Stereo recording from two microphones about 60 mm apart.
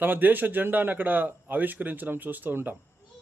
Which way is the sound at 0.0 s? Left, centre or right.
Right.